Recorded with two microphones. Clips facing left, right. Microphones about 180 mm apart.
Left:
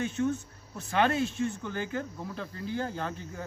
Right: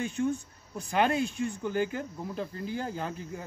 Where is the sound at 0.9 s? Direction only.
Centre (ahead or behind).